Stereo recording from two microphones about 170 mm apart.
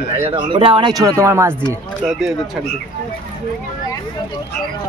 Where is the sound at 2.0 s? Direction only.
5° right (ahead or behind).